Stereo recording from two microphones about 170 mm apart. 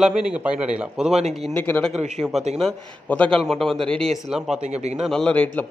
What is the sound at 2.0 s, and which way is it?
Speech, 40° right (ahead or behind).